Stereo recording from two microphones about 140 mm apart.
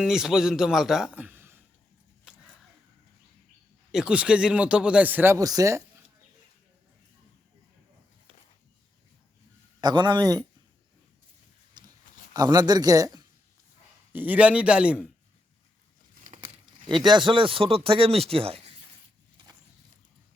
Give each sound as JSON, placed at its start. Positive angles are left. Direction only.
{"t": 0.0, "sound": "a man's voice", "side_deg": -5}
{"t": 2.3, "sound": "a sound", "side_deg": -5}
{"t": 3.9, "sound": "speech", "side_deg": -5}
{"t": 9.8, "sound": "speech", "side_deg": -30}
{"t": 11.8, "sound": "a sound", "side_deg": -30}
{"t": 12.3, "sound": "speech", "side_deg": -30}
{"t": 14.1, "sound": "speech", "side_deg": -10}
{"t": 17.1, "sound": "speech", "side_deg": -35}